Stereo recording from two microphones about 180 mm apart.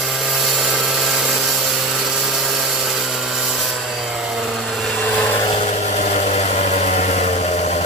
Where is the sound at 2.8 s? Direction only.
Centre (ahead or behind).